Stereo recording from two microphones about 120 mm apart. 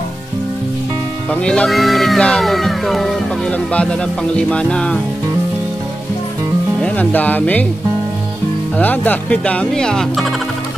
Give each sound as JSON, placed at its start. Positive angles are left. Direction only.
{"t": 1.3, "sound": "speech", "side_deg": 10}
{"t": 6.8, "sound": "speech", "side_deg": 15}
{"t": 8.7, "sound": "speech", "side_deg": 15}